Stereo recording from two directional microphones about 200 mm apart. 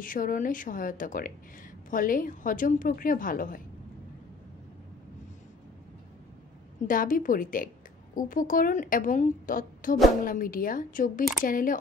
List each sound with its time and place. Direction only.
0.0 s a woman's voice: 45° left (ahead or behind)
6.9 s a woman's voice: 45° left (ahead or behind)